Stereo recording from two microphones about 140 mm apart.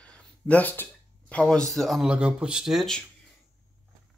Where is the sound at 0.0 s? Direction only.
10° left (ahead or behind).